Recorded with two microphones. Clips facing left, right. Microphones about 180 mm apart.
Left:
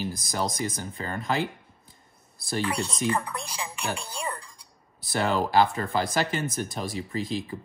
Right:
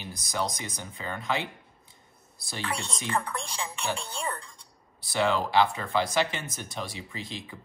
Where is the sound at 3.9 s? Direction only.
10° left (ahead or behind).